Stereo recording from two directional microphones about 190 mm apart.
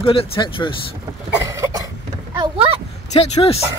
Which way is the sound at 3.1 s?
30° left (ahead or behind).